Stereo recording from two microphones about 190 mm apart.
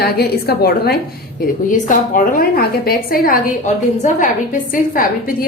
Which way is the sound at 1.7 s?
45° left (ahead or behind).